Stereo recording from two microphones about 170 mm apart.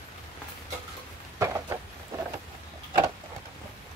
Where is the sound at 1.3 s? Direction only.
20° right (ahead or behind).